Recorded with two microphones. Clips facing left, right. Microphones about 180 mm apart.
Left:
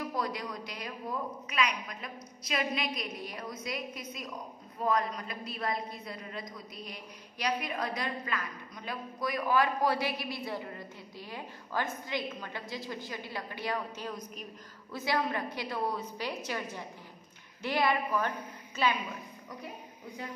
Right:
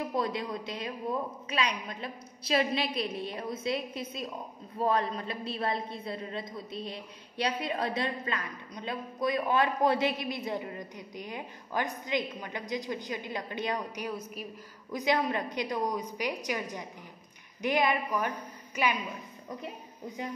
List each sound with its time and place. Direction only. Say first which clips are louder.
0.0 s a woman's voice: right 3 dB; 25° right (ahead or behind); by 15.0 s 5° right (ahead or behind)
15.0 s a woman's voice: right 3 dB; 15° right (ahead or behind)